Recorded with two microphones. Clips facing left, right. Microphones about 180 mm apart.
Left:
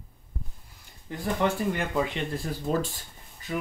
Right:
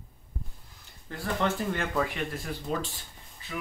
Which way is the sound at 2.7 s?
45° left (ahead or behind).